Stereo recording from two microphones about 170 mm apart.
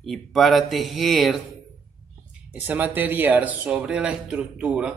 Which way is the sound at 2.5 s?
10° right (ahead or behind).